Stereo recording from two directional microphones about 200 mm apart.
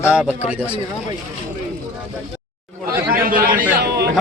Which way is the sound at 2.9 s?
45° right (ahead or behind).